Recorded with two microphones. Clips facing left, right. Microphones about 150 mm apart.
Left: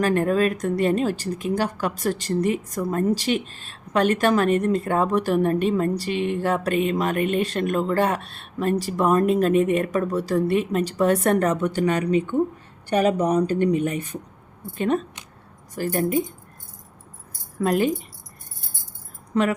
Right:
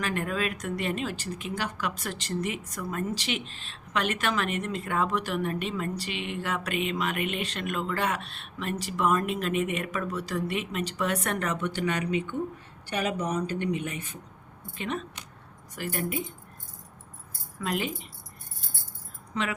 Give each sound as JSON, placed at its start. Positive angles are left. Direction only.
{"t": 0.0, "sound": "speech", "side_deg": 40}
{"t": 17.6, "sound": "speech", "side_deg": 45}
{"t": 19.3, "sound": "speech", "side_deg": 45}